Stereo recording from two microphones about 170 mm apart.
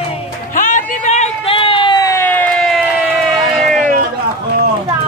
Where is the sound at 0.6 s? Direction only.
50° left (ahead or behind); by 3.1 s 5° right (ahead or behind).